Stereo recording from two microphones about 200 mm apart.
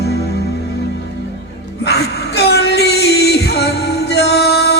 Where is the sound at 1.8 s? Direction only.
55° left (ahead or behind).